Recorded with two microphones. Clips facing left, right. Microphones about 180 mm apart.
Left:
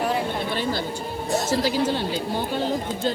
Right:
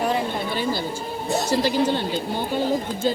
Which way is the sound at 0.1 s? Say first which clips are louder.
Right 1 dB; centre (ahead or behind).